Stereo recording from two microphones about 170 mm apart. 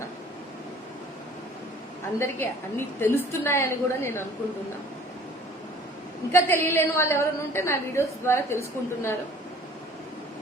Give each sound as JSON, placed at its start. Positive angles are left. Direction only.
{"t": 2.1, "sound": "a woman's voice", "side_deg": 15}
{"t": 6.3, "sound": "a woman's voice", "side_deg": 15}